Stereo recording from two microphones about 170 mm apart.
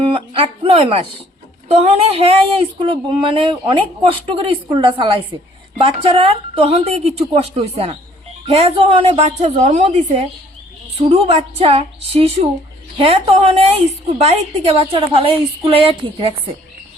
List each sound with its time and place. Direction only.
0.0 s speech: 30° right (ahead or behind)